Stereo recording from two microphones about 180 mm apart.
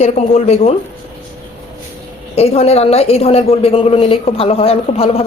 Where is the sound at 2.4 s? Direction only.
35° left (ahead or behind).